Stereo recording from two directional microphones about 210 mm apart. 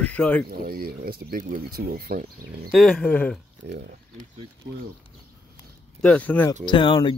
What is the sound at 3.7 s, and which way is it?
Speech, 50° right (ahead or behind).